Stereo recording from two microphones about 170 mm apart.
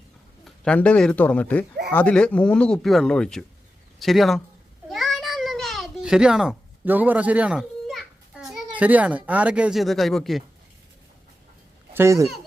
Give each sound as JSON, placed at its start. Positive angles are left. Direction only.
{"t": 0.4, "sound": "speech", "side_deg": 5}
{"t": 4.9, "sound": "a sound", "side_deg": 0}
{"t": 11.9, "sound": "speech", "side_deg": -20}